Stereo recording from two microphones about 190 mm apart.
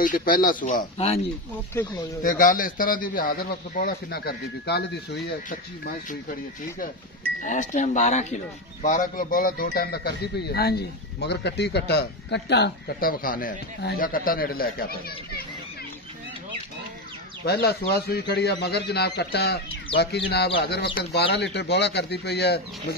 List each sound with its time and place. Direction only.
0.0 s a man's voice: 45° left (ahead or behind)
1.8 s speech: 10° left (ahead or behind)
2.2 s a man's voice: 45° left (ahead or behind)
7.4 s a man's voice: 40° left (ahead or behind)
17.5 s speech: 55° left (ahead or behind)